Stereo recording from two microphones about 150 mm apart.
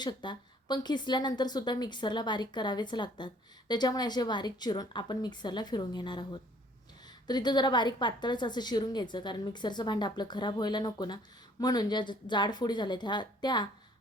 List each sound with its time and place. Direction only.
0.0 s a woman's voice: 30° left (ahead or behind)